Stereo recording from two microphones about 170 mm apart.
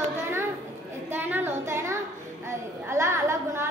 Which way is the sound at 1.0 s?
10° right (ahead or behind).